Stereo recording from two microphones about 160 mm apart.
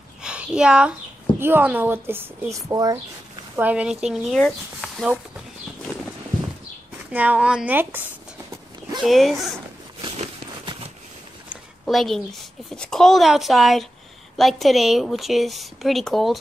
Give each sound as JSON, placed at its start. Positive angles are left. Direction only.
{"t": 0.2, "sound": "a sound", "side_deg": -5}
{"t": 1.4, "sound": "speech", "side_deg": -10}
{"t": 3.5, "sound": "speech", "side_deg": -10}
{"t": 7.1, "sound": "writing", "side_deg": -10}
{"t": 9.0, "sound": "speech", "side_deg": 0}
{"t": 10.0, "sound": "a sound", "side_deg": -30}
{"t": 11.8, "sound": "a woman's voice", "side_deg": 0}